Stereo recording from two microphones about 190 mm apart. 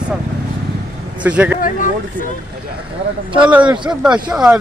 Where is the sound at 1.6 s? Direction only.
45° left (ahead or behind).